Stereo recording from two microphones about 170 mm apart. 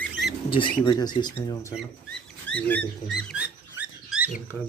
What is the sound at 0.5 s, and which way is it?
Speech, 30° left (ahead or behind).